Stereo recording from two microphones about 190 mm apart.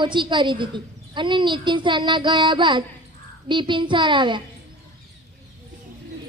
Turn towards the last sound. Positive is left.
turn(degrees=-25)  # may be behind; listen again after turning